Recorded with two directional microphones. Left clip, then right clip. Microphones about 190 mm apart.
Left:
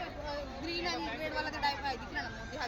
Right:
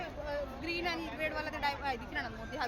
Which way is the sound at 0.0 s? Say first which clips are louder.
Right 1 dB; centre (ahead or behind).